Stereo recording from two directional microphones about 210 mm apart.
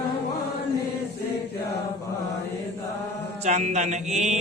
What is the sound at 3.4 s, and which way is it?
Music, 35° right (ahead or behind).